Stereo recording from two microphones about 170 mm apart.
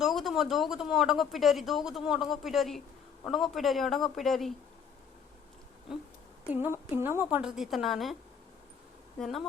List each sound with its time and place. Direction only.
0.0 s speech: centre (ahead or behind)
6.5 s speech: 10° right (ahead or behind)
9.1 s speech: centre (ahead or behind)